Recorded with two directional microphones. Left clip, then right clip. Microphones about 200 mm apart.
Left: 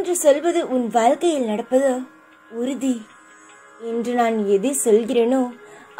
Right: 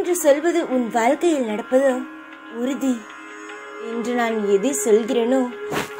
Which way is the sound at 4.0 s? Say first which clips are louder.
Left 2 dB; centre (ahead or behind).